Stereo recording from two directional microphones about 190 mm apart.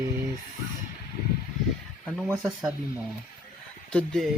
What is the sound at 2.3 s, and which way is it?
Speech, 10° right (ahead or behind).